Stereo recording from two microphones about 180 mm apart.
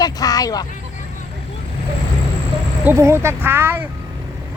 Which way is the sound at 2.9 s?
15° right (ahead or behind).